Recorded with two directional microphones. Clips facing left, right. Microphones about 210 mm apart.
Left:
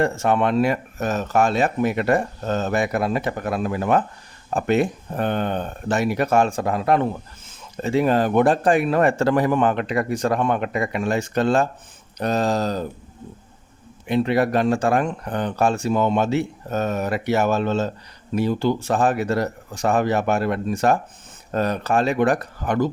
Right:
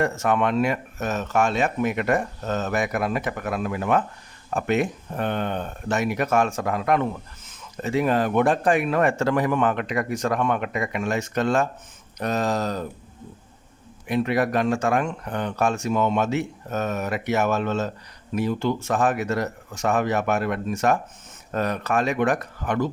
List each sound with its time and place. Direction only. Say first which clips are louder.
0.0 s speech: left 2 dB; 30° left (ahead or behind)
14.1 s speech: left 3 dB; 30° left (ahead or behind)